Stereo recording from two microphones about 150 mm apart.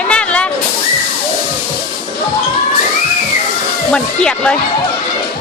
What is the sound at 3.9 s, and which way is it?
Speech, 5° left (ahead or behind).